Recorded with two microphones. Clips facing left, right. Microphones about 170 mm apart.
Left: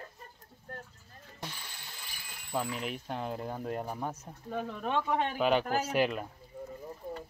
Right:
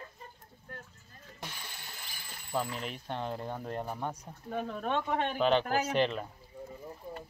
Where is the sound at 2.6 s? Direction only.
5° left (ahead or behind).